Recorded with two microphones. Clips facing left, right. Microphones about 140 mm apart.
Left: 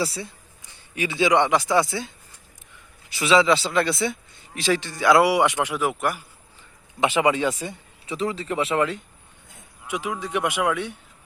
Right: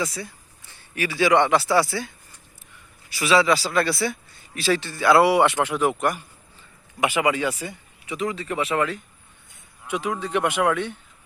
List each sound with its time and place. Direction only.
0.0 s a man's voice: 30° left (ahead or behind); by 6.2 s 10° left (ahead or behind)
7.1 s speech: centre (ahead or behind)
8.0 s speech: 30° left (ahead or behind)
9.8 s speech: 10° left (ahead or behind)